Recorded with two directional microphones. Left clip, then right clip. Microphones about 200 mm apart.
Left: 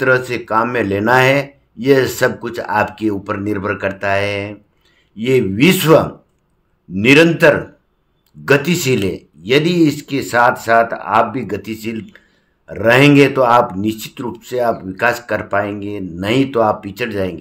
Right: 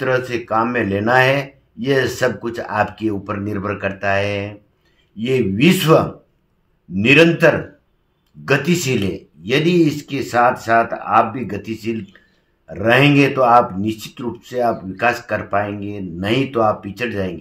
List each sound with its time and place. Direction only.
0.0 s speech: 35° left (ahead or behind)